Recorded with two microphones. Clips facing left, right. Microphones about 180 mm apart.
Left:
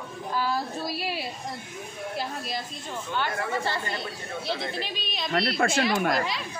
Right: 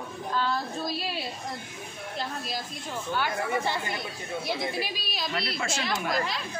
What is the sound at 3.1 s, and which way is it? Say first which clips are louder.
Speech: even; 10° right (ahead or behind).